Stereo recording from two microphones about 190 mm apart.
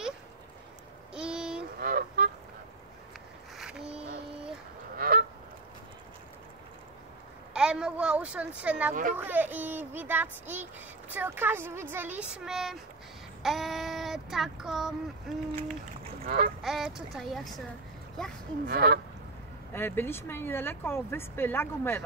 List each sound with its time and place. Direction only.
1.1 s a sound: 5° right (ahead or behind)
1.8 s goose: 50° right (ahead or behind)
3.5 s music: 5° right (ahead or behind)
4.9 s goose: 50° right (ahead or behind)
7.5 s speech: 5° right (ahead or behind)
16.3 s duck: 50° right (ahead or behind)
16.6 s speech: centre (ahead or behind)
18.7 s honk: 55° right (ahead or behind)
19.7 s speech: 10° left (ahead or behind)